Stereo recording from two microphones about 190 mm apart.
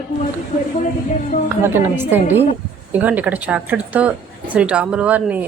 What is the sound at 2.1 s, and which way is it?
Speech, 10° right (ahead or behind).